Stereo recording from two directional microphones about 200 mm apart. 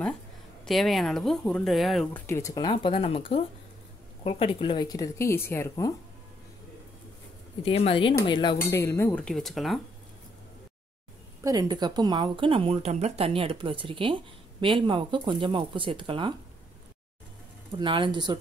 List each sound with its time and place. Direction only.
0.7 s speech: centre (ahead or behind)
2.2 s speech: 15° left (ahead or behind)
7.6 s speech: 30° left (ahead or behind); by 9.8 s centre (ahead or behind)
11.4 s speech: 20° right (ahead or behind)
17.6 s speech: 25° right (ahead or behind)